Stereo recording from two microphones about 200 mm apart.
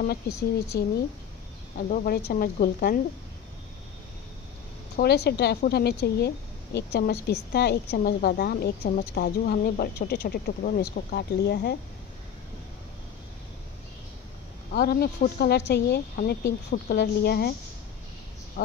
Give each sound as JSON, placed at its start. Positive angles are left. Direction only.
{"t": 0.0, "sound": "a woman's voice", "side_deg": 55}
{"t": 4.9, "sound": "a woman's voice", "side_deg": 55}
{"t": 14.7, "sound": "a woman's voice", "side_deg": 50}